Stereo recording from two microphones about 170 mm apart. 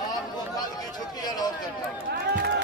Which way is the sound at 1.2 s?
25° left (ahead or behind).